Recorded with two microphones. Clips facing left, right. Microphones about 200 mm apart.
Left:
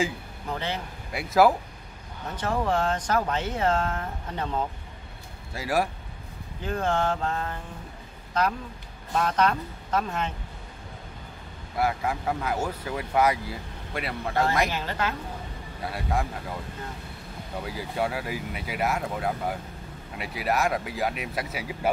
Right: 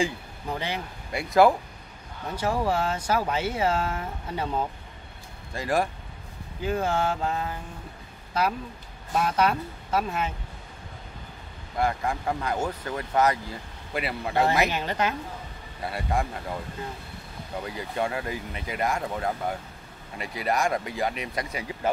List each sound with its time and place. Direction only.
1.1 s speech: centre (ahead or behind)
2.3 s speech: 10° right (ahead or behind)
5.5 s speech: 5° left (ahead or behind)
6.6 s speech: 10° right (ahead or behind)
11.7 s speech: 5° left (ahead or behind)
13.9 s speech: 5° right (ahead or behind)
14.7 s a woman's voice: 20° right (ahead or behind)
15.8 s speech: centre (ahead or behind)
17.6 s speech: 5° left (ahead or behind)